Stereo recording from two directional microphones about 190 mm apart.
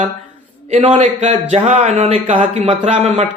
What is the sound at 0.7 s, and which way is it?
A man's voice, 30° right (ahead or behind).